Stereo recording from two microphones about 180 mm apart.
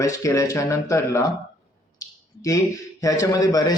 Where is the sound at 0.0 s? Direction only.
15° left (ahead or behind).